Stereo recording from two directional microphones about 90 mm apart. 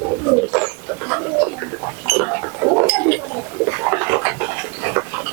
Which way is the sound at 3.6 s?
25° right (ahead or behind).